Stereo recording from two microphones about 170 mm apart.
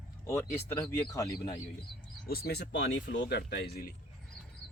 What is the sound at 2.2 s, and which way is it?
Speech, 65° left (ahead or behind).